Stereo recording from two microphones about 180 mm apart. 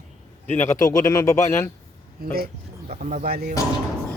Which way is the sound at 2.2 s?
60° right (ahead or behind).